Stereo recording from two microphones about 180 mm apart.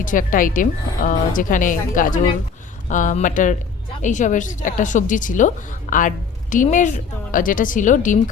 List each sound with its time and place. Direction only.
0.0 s a woman's voice: 50° left (ahead or behind)